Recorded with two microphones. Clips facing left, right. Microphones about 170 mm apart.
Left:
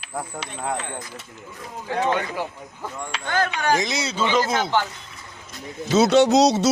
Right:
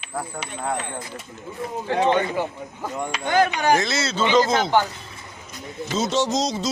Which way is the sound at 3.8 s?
15° left (ahead or behind).